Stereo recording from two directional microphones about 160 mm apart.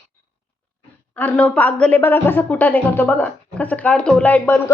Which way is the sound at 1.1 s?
10° left (ahead or behind).